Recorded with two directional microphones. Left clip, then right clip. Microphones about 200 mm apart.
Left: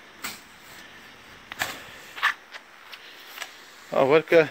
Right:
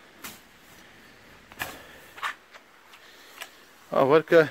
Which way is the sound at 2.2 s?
5° right (ahead or behind).